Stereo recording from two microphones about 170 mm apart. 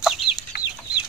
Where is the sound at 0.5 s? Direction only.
65° left (ahead or behind).